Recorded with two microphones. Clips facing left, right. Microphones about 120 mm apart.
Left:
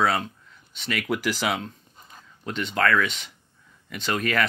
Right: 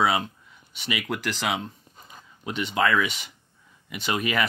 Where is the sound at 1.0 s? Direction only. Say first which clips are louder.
Left 3 dB; 5° left (ahead or behind).